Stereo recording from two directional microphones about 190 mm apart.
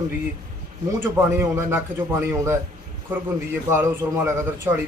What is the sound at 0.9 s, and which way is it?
A man's voice, 10° right (ahead or behind).